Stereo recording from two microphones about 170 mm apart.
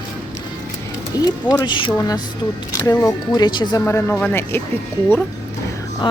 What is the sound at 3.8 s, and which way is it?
Speech, 10° left (ahead or behind).